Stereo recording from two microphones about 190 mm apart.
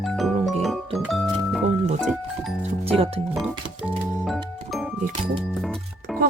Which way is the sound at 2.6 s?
30° right (ahead or behind).